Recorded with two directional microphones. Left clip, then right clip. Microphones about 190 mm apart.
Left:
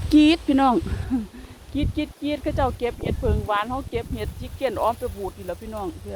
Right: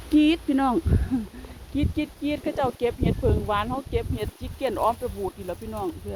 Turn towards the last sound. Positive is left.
turn(degrees=0)  # may be behind; listen again after turning